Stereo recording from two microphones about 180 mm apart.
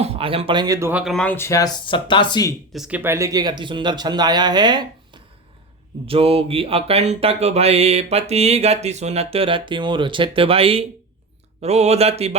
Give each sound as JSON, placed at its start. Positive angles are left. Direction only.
{"t": 0.0, "sound": "speech", "side_deg": -30}
{"t": 1.0, "sound": "speech", "side_deg": 5}
{"t": 2.7, "sound": "speech", "side_deg": -5}
{"t": 6.1, "sound": "a sound", "side_deg": -30}